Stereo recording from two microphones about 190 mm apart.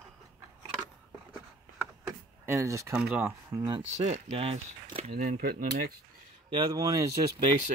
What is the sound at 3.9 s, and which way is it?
Speech, 35° right (ahead or behind).